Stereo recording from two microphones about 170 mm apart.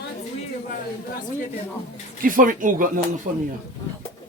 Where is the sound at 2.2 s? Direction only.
55° right (ahead or behind).